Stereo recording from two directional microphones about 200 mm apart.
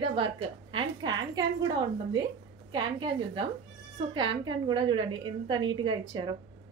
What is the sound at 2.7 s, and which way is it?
A woman's voice, 25° right (ahead or behind).